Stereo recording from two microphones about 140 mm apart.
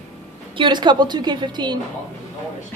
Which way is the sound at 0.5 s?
35° right (ahead or behind).